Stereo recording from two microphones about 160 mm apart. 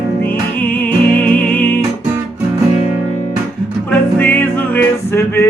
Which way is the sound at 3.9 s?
10° left (ahead or behind).